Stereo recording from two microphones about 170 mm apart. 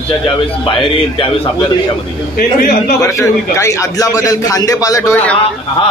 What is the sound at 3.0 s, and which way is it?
A man's voice, 20° left (ahead or behind).